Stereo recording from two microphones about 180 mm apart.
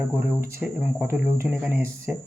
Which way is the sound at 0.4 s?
10° right (ahead or behind).